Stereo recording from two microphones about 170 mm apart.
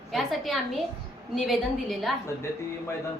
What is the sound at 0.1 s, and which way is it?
A woman's voice, centre (ahead or behind).